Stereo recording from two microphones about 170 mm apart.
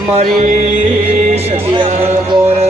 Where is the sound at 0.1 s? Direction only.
40° right (ahead or behind).